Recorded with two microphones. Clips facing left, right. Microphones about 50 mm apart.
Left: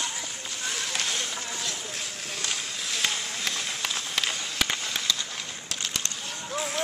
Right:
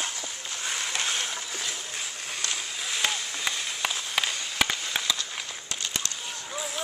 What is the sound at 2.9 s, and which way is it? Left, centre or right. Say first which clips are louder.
Run: even; centre.